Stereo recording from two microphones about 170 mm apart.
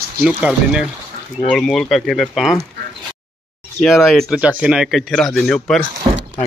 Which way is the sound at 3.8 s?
Centre (ahead or behind).